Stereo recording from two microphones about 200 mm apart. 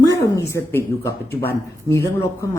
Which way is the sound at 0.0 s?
15° left (ahead or behind).